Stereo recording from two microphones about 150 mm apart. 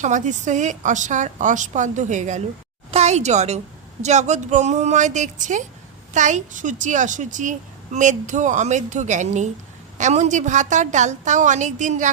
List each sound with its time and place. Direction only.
0.0 s a woman's voice: 55° right (ahead or behind)